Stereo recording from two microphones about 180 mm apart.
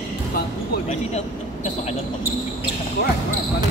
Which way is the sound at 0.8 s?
40° left (ahead or behind).